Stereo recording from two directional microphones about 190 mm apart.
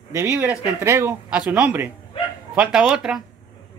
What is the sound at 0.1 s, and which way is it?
A man's voice, 15° right (ahead or behind).